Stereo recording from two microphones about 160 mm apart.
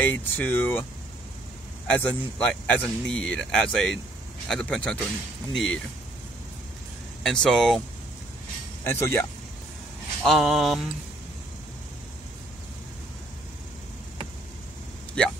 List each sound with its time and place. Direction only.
0.0 s speech: 10° left (ahead or behind)
1.9 s speech: 5° left (ahead or behind)
7.2 s speech: 5° left (ahead or behind)
8.8 s speech: 15° left (ahead or behind)
10.2 s speech: centre (ahead or behind)